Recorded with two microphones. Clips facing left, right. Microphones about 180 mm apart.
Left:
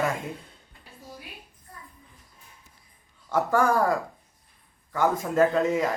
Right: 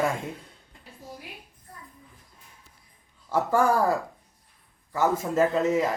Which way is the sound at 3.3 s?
5° right (ahead or behind).